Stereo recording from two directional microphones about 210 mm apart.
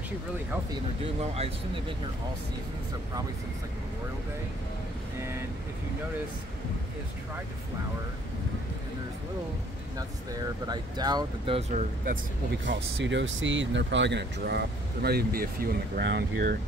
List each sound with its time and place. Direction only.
10.7 s speech: 20° right (ahead or behind)
12.6 s speech: 60° right (ahead or behind)